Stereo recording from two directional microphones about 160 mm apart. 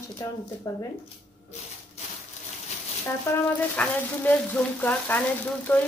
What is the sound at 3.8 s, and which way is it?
Speech, 10° left (ahead or behind).